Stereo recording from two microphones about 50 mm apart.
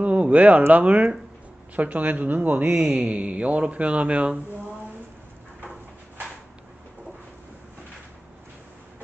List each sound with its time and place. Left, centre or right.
0.0 s a man's voice: right